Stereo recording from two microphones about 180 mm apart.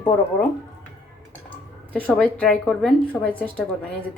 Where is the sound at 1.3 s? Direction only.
10° left (ahead or behind).